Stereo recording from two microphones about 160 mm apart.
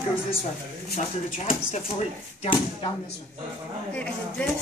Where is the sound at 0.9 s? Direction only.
40° left (ahead or behind).